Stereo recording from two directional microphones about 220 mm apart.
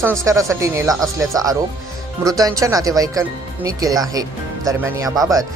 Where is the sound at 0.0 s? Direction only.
15° right (ahead or behind).